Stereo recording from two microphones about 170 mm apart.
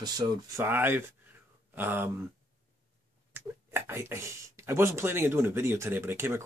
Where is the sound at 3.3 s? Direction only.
15° right (ahead or behind).